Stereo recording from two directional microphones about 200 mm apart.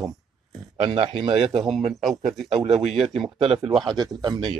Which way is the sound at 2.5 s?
30° right (ahead or behind).